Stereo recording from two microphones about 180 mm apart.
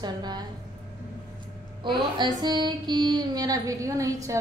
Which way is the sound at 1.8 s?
25° right (ahead or behind).